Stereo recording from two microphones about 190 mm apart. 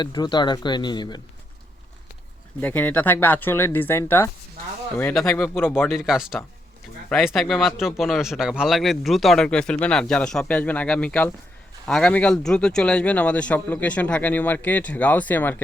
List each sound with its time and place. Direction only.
0.0 s speech: 25° left (ahead or behind)
2.6 s speech: 10° left (ahead or behind)
5.9 s speech: centre (ahead or behind)